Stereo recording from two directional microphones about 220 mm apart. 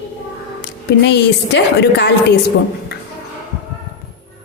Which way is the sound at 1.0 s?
50° left (ahead or behind).